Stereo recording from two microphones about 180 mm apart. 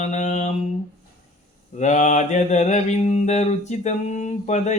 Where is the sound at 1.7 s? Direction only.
40° left (ahead or behind).